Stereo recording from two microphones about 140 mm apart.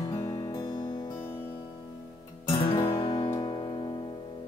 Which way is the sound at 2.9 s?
35° left (ahead or behind).